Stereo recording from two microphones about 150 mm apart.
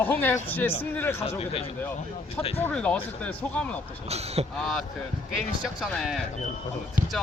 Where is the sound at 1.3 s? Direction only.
40° left (ahead or behind).